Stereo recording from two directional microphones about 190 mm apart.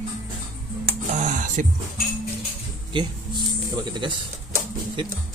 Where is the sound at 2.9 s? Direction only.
20° right (ahead or behind).